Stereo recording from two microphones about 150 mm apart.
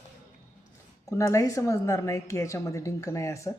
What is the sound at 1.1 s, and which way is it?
A woman's voice, 20° left (ahead or behind).